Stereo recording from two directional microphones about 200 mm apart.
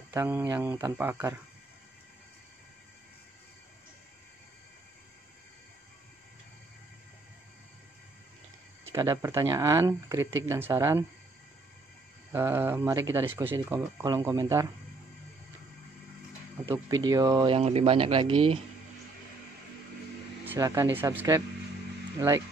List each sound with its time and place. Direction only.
0.1 s speech: 10° right (ahead or behind)
8.9 s speech: 15° right (ahead or behind)
12.3 s speech: 10° right (ahead or behind)
16.6 s speech: 15° right (ahead or behind)
20.4 s speech: 15° right (ahead or behind)